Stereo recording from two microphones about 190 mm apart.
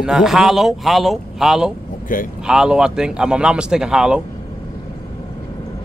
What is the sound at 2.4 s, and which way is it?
Speech, 5° right (ahead or behind).